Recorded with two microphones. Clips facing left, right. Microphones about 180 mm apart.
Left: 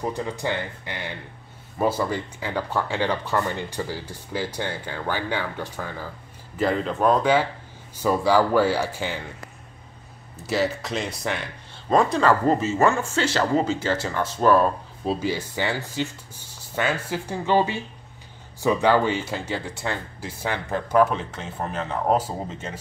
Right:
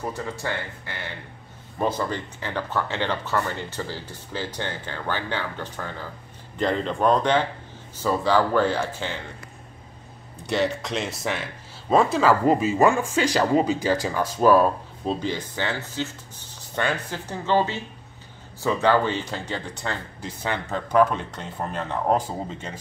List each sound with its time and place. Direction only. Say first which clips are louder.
0.0 s speech: left 3 dB; 15° left (ahead or behind)
10.4 s speech: even; centre (ahead or behind)
15.0 s speech: left 1 dB; 10° left (ahead or behind)